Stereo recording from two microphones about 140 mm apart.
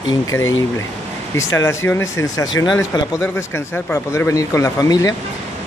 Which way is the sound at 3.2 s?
15° left (ahead or behind).